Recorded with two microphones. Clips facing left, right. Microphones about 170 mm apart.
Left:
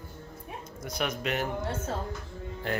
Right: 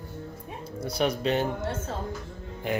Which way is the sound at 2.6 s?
15° right (ahead or behind).